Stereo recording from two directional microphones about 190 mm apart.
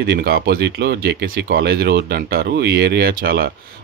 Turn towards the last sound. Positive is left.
turn(degrees=-50)  # may be behind; listen again after turning